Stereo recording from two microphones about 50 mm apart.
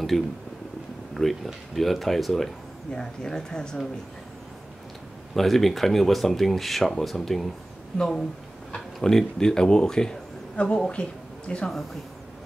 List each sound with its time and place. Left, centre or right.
0.1 s speech: centre
2.9 s speech: centre
5.3 s speech: centre